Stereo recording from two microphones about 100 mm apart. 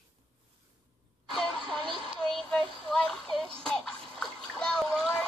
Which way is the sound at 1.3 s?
5° left (ahead or behind).